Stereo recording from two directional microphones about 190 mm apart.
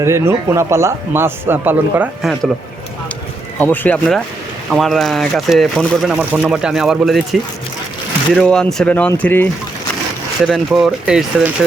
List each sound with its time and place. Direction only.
0.0 s speech: 15° right (ahead or behind)
3.6 s speech: 10° left (ahead or behind)
8.3 s speech: 5° left (ahead or behind)